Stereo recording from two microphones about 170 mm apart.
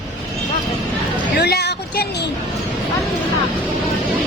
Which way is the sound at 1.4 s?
80° left.